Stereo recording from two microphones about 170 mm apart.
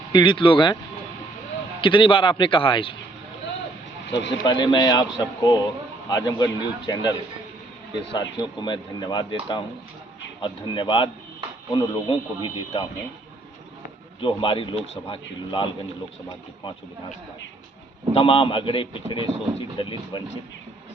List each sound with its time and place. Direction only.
0.1 s speech: 30° left (ahead or behind)
1.8 s speech: 30° left (ahead or behind)
4.4 s speech: 25° left (ahead or behind)
14.2 s speech: 30° left (ahead or behind)
18.1 s speech: 30° left (ahead or behind)